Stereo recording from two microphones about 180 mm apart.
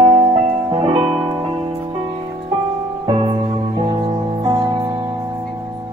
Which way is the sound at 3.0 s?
30° right (ahead or behind).